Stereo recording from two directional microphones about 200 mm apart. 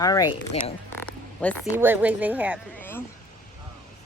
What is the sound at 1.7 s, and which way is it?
Speech, 10° right (ahead or behind).